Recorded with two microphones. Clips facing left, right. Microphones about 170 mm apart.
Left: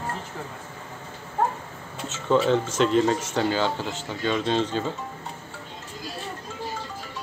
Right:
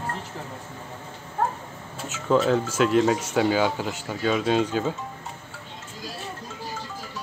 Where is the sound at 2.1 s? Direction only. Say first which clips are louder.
Even; 5° right (ahead or behind).